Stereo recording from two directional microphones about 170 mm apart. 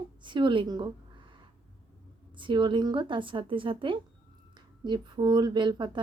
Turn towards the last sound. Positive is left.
turn(degrees=-25)  # may be behind; listen again after turning